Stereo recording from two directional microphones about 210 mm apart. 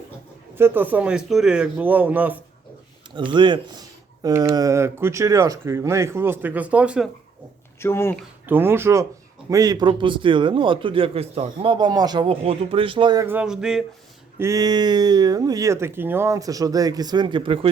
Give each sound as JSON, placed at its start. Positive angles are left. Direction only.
{"t": 0.5, "sound": "speech", "side_deg": -10}
{"t": 3.2, "sound": "speech", "side_deg": -20}
{"t": 7.8, "sound": "speech", "side_deg": 10}
{"t": 8.4, "sound": "a man's voice", "side_deg": -10}
{"t": 13.2, "sound": "a sound", "side_deg": -5}
{"t": 14.3, "sound": "speech", "side_deg": -15}